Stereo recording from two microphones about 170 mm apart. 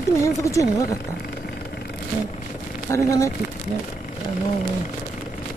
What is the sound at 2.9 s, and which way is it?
Speech, 15° left (ahead or behind).